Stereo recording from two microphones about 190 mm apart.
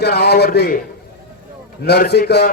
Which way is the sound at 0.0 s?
60° left (ahead or behind).